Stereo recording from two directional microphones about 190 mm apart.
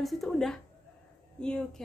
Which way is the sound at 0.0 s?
Centre (ahead or behind).